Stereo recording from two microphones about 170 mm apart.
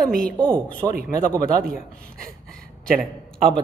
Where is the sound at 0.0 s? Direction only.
55° right (ahead or behind).